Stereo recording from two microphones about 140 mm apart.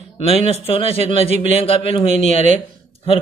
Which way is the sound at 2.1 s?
60° right (ahead or behind).